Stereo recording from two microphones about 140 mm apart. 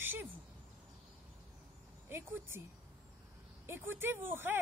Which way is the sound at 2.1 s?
15° right (ahead or behind).